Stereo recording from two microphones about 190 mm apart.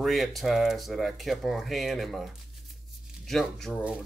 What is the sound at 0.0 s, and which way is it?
Speech, centre (ahead or behind).